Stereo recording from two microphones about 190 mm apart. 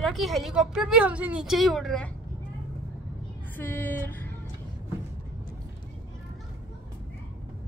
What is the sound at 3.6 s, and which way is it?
Speech, 10° left (ahead or behind).